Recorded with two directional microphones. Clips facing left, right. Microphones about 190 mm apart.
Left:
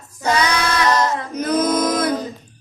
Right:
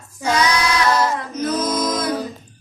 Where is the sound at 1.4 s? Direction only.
60° left (ahead or behind).